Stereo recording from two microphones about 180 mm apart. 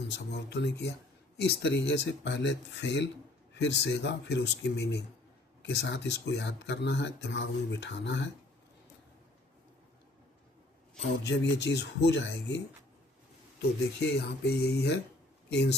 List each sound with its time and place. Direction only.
0.1 s speech: 70° left (ahead or behind)
11.2 s speech: 70° left (ahead or behind)
14.0 s speech: 70° left (ahead or behind)